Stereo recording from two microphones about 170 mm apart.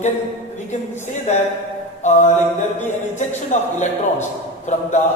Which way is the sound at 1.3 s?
40° left (ahead or behind).